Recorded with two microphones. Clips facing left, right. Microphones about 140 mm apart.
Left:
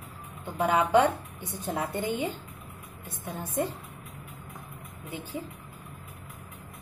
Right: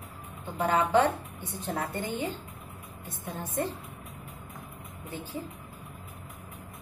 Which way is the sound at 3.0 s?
10° left (ahead or behind).